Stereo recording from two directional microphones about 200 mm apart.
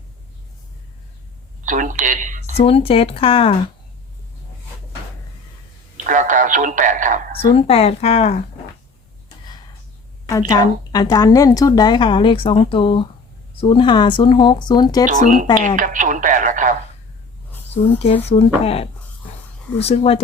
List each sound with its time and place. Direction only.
1.6 s speech: 40° right (ahead or behind)
2.6 s a woman's voice: 30° left (ahead or behind)
6.1 s speech: 40° right (ahead or behind)
7.4 s speech: 30° left (ahead or behind)
10.2 s a woman's voice: 15° left (ahead or behind)
15.0 s speech: 40° right (ahead or behind)
18.3 s a woman's voice: 30° left (ahead or behind)